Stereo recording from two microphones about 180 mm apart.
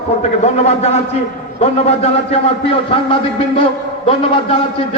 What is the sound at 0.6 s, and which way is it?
A man's voice, 35° left (ahead or behind).